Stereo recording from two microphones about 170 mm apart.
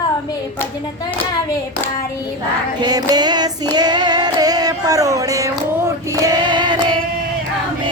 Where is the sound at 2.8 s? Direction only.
25° right (ahead or behind).